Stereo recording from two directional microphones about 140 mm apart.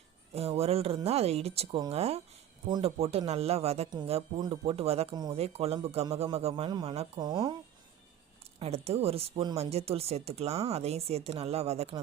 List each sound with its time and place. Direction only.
0.3 s speech: 45° right (ahead or behind)
4.4 s speech: 35° right (ahead or behind)
7.2 s speech: 30° right (ahead or behind)
8.5 s speech: 45° right (ahead or behind)